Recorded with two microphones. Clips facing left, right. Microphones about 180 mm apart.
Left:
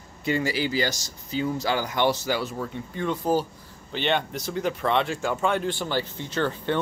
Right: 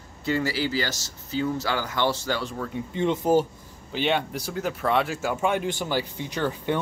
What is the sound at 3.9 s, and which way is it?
Speech, 5° right (ahead or behind).